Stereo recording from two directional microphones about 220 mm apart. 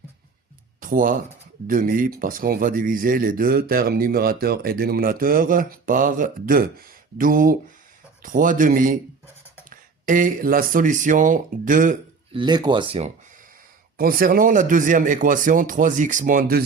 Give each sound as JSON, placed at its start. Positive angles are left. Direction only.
{"t": 0.8, "sound": "speech", "side_deg": -40}
{"t": 12.3, "sound": "speech", "side_deg": -20}
{"t": 13.9, "sound": "speech", "side_deg": -40}